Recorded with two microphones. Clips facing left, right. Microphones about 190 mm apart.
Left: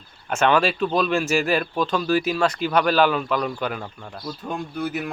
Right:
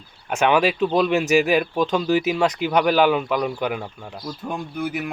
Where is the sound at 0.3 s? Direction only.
10° right (ahead or behind).